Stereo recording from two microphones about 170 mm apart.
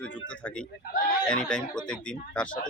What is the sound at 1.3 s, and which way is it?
Speech, 5° left (ahead or behind).